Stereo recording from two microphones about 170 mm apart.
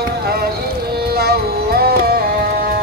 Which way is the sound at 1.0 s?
65° right (ahead or behind).